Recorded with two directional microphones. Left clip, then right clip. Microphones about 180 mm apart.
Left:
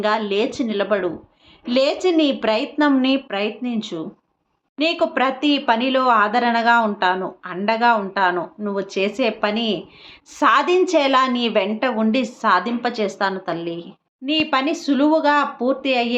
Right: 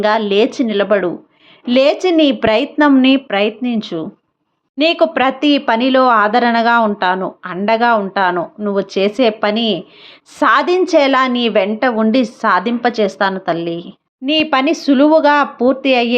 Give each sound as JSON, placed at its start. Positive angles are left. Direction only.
{"t": 0.0, "sound": "a woman's voice", "side_deg": -35}